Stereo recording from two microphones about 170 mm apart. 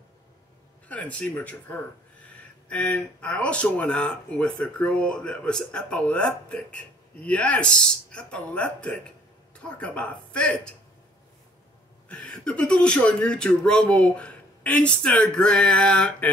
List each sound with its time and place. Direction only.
0.8 s speech: 10° left (ahead or behind)
12.1 s speech: 5° left (ahead or behind)